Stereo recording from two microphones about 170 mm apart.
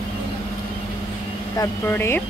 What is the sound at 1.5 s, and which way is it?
Speech, 15° left (ahead or behind).